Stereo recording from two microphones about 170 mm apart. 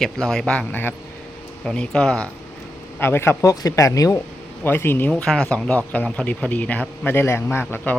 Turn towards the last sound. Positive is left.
turn(degrees=10)  # may be behind; listen again after turning